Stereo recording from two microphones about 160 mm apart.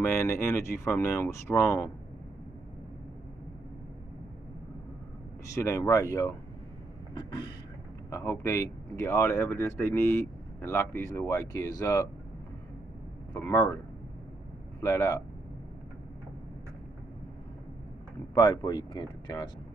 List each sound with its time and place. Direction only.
0.0 s speech: 15° left (ahead or behind)
5.5 s speech: 20° left (ahead or behind)
13.3 s speech: 20° left (ahead or behind)
14.8 s speech: 15° left (ahead or behind)
18.3 s speech: 30° left (ahead or behind)